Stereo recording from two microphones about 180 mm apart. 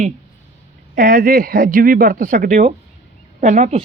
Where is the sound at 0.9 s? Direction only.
50° right (ahead or behind).